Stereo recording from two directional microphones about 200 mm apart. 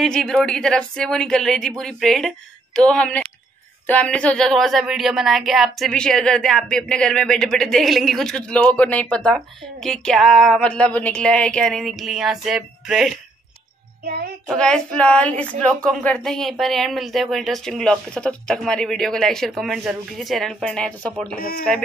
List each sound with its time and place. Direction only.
0.0 s speech: centre (ahead or behind)
14.5 s speech: 5° left (ahead or behind)
21.4 s speech: 45° left (ahead or behind)